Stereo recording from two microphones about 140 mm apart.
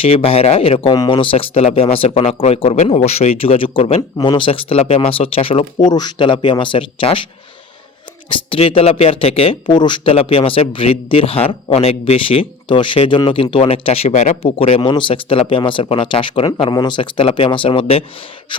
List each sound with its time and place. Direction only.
0.0 s speech: 45° left (ahead or behind)
8.3 s speech: 40° left (ahead or behind)